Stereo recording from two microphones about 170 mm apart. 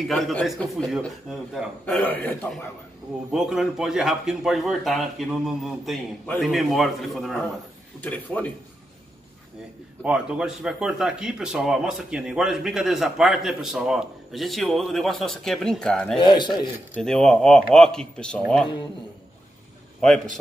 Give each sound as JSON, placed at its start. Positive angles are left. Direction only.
{"t": 0.1, "sound": "speech", "side_deg": 0}
{"t": 1.9, "sound": "a man's voice", "side_deg": 10}
{"t": 3.3, "sound": "a man's voice", "side_deg": -5}
{"t": 10.0, "sound": "speech", "side_deg": -5}
{"t": 16.2, "sound": "a man's voice", "side_deg": 25}
{"t": 16.9, "sound": "speech", "side_deg": 5}